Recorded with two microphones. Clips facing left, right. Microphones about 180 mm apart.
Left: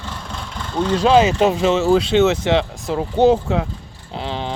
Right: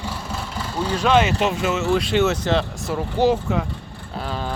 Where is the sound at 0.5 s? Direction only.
10° right (ahead or behind).